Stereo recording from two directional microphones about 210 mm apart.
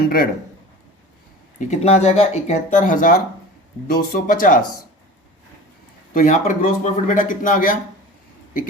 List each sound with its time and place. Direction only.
0.0 s a man's voice: 45° left (ahead or behind)
1.5 s speech: 35° left (ahead or behind)
6.1 s speech: 40° left (ahead or behind)